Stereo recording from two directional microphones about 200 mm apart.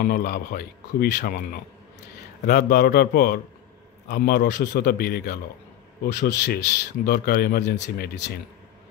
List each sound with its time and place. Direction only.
0.0 s speech: 50° left (ahead or behind)
2.4 s speech: 50° left (ahead or behind)